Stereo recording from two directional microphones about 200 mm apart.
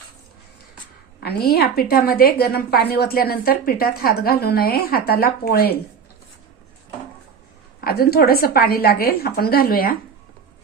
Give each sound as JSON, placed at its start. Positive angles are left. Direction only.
{"t": 1.2, "sound": "a woman's voice", "side_deg": 50}
{"t": 7.9, "sound": "a woman's voice", "side_deg": 50}